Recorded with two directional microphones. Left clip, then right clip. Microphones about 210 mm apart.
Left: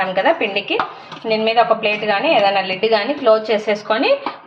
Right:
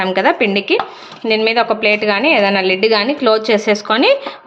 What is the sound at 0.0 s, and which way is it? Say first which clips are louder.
A woman's voice: right 2 dB; 50° right (ahead or behind).